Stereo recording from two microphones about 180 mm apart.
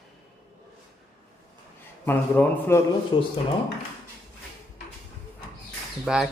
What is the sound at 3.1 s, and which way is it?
Speech, 25° left (ahead or behind).